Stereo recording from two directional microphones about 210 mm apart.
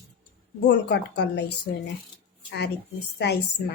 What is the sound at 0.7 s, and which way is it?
Speech, 55° left (ahead or behind).